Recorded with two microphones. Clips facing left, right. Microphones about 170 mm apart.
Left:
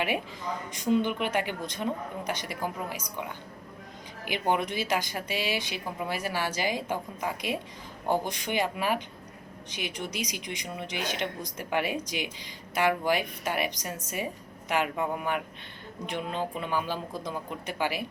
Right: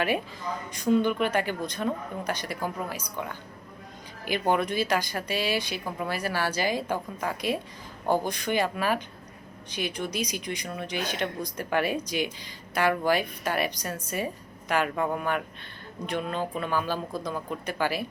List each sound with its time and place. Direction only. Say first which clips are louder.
0.7 s speech: right 3 dB; 20° left (ahead or behind)
4.3 s speech: right 3 dB; 20° left (ahead or behind)